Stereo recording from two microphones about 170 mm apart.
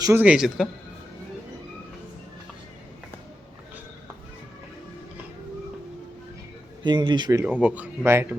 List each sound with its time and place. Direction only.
0.0 s a man's voice: 10° right (ahead or behind)
6.8 s speech: 25° right (ahead or behind)
7.4 s speech: 10° right (ahead or behind)